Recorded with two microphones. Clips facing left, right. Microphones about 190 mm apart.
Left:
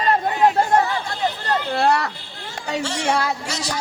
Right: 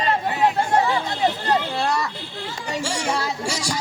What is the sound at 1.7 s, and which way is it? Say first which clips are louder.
Children playing: left 4 dB; 65° left (ahead or behind).